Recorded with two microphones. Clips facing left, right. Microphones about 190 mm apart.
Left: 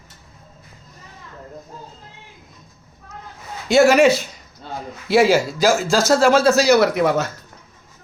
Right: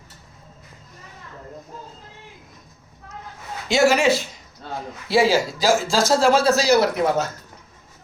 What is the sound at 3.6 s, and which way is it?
Speech, 55° left (ahead or behind).